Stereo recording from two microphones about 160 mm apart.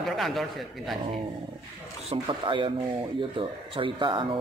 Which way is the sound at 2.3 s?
30° right (ahead or behind).